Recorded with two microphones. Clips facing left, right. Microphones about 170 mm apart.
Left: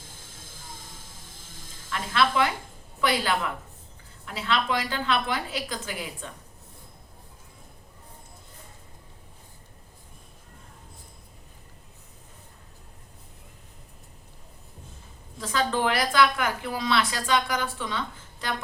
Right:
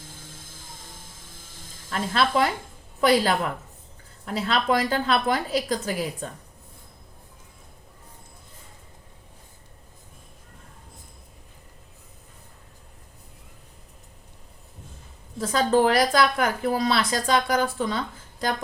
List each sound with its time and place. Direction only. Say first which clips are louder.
1.9 s a woman's voice: right 2 dB; 40° right (ahead or behind)
15.4 s a woman's voice: right 6 dB; 40° right (ahead or behind)